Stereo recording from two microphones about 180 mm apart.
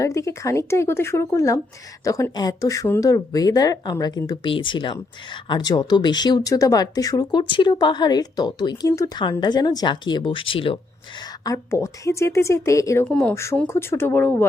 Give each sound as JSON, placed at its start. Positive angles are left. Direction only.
{"t": 0.0, "sound": "a woman's voice", "side_deg": 15}
{"t": 13.1, "sound": "a woman's voice", "side_deg": 5}